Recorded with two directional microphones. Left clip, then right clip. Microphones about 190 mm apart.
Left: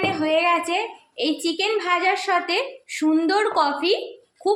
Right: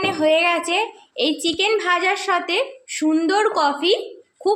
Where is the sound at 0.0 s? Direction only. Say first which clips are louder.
Right 3 dB; 20° right (ahead or behind).